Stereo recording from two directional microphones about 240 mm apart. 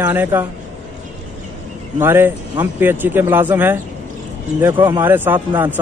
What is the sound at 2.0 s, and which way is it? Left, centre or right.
Speech, centre.